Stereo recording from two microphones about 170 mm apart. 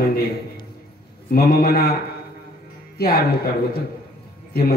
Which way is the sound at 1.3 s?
65° left (ahead or behind).